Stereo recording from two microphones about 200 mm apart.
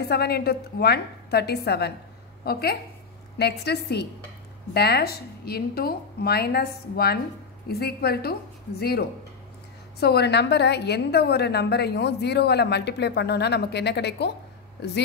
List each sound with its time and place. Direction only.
0.1 s a woman's voice: 50° left (ahead or behind)